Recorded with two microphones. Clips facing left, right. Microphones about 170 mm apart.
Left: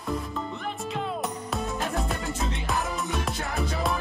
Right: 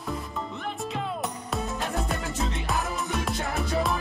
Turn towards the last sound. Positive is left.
turn(degrees=0)  # may be behind; listen again after turning